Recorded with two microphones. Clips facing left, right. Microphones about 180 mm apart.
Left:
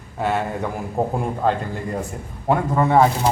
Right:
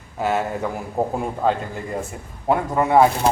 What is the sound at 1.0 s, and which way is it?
Speech, centre (ahead or behind).